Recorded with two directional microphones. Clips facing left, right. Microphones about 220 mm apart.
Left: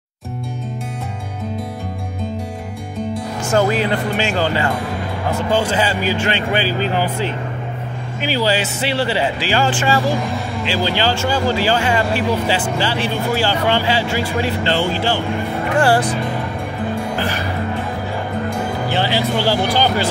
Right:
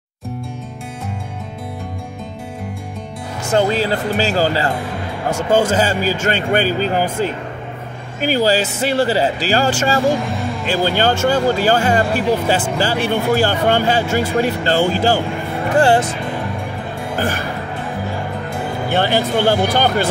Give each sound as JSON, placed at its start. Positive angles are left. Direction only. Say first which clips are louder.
{"t": 3.5, "sound": "speech", "louder": "right 1 dB", "side_deg": -30}
{"t": 10.2, "sound": "speech", "louder": "even", "side_deg": 0}
{"t": 10.7, "sound": "speech", "louder": "right 3 dB", "side_deg": -50}
{"t": 15.8, "sound": "speech", "louder": "right 1 dB", "side_deg": -25}
{"t": 18.9, "sound": "speech", "louder": "right 3 dB", "side_deg": -50}